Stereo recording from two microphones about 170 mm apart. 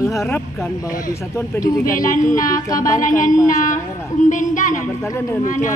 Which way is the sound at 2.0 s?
50° left (ahead or behind).